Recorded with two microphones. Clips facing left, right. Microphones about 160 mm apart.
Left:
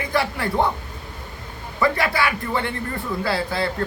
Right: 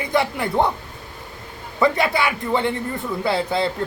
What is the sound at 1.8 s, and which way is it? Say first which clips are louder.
A man's voice: right 2 dB; 20° right (ahead or behind).